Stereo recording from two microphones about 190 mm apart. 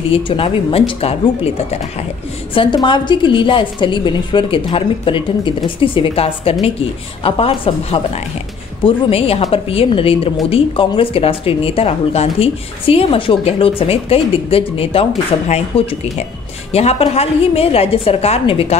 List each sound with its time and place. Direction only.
0.1 s speech: 30° left (ahead or behind)
16.7 s a woman's voice: 30° left (ahead or behind)